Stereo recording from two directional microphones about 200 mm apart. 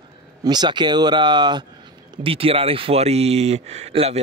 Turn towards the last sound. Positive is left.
turn(degrees=-30)  # may be behind; listen again after turning